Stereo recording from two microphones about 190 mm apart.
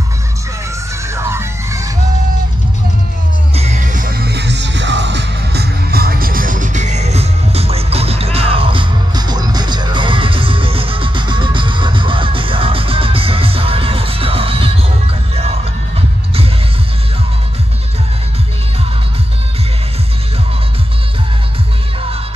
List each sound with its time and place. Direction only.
1.0 s music: 15° right (ahead or behind)
3.5 s music: 35° right (ahead or behind)